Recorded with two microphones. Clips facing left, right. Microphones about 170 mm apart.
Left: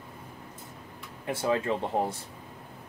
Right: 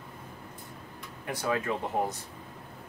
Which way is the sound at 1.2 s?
25° left (ahead or behind).